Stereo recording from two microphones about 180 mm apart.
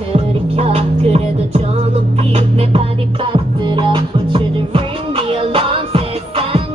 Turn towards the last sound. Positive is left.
turn(degrees=-30)  # may be behind; listen again after turning